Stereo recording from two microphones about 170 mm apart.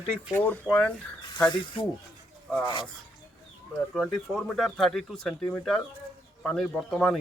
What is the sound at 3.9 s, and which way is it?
Speech, centre (ahead or behind).